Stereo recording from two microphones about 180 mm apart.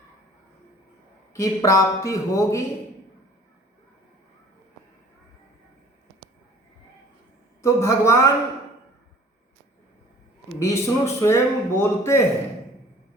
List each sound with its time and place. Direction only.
1.3 s a man's voice: 15° left (ahead or behind)
7.6 s a man's voice: 15° left (ahead or behind)
10.6 s a man's voice: 15° left (ahead or behind)